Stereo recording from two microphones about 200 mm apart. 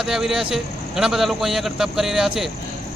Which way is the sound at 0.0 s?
Centre (ahead or behind).